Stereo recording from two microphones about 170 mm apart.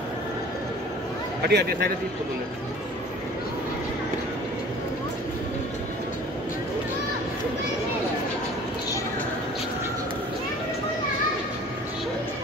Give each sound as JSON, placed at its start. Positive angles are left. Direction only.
{"t": 1.5, "sound": "a man's voice", "side_deg": -75}